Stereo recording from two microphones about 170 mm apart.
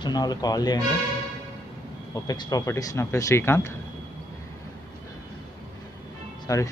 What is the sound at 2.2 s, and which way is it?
Speech, 20° left (ahead or behind).